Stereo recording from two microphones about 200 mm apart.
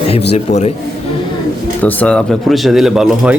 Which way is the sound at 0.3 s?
35° left (ahead or behind).